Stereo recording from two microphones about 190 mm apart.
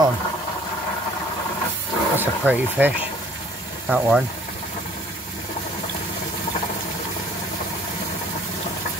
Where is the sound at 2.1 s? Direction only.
10° right (ahead or behind).